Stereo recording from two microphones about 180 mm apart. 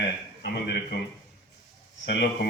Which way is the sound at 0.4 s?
65° left (ahead or behind).